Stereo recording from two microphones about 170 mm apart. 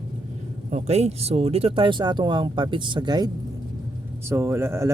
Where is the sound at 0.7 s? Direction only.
40° right (ahead or behind).